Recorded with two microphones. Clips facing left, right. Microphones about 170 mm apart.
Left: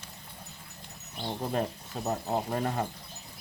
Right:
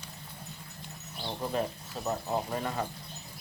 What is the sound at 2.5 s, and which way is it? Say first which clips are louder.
Speech: left 3 dB; 45° left (ahead or behind).